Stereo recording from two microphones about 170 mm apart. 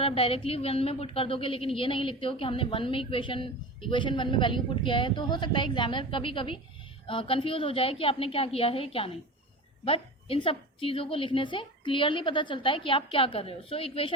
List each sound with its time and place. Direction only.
0.0 s a woman's voice: 35° left (ahead or behind)